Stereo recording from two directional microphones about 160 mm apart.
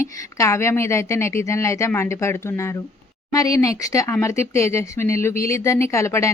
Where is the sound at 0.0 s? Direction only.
15° left (ahead or behind).